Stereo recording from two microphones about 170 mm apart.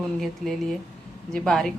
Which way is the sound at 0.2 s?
Centre (ahead or behind).